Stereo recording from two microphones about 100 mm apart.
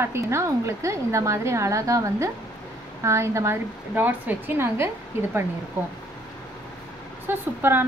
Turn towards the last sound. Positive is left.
turn(degrees=-20)  # may be behind; listen again after turning